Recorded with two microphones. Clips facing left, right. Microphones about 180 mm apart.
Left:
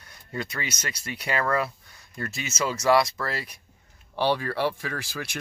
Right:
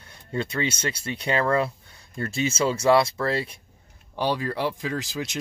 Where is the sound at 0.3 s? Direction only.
25° right (ahead or behind).